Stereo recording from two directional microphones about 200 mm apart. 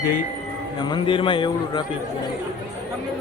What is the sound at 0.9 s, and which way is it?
Speech, 25° left (ahead or behind).